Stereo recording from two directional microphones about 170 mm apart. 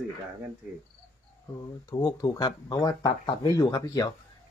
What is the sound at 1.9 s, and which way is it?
Speech, 20° left (ahead or behind).